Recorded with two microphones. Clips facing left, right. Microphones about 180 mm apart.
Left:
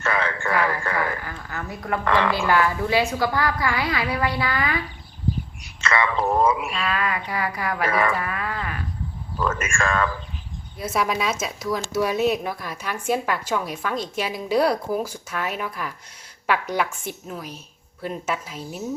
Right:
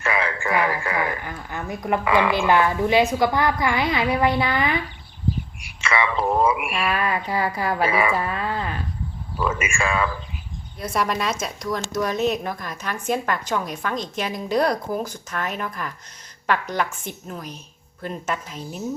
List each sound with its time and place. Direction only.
0.0 s radio: 10° right (ahead or behind)
1.5 s a woman's voice: 25° right (ahead or behind)
2.0 s speech: 10° right (ahead or behind)
2.3 s a woman's voice: 20° right (ahead or behind)
5.8 s speech: 10° right (ahead or behind)
6.7 s a woman's voice: 25° right (ahead or behind)
7.9 s speech: 10° right (ahead or behind)
8.1 s a woman's voice: 25° right (ahead or behind)
9.4 s speech: 10° right (ahead or behind)
10.8 s speech: 5° left (ahead or behind)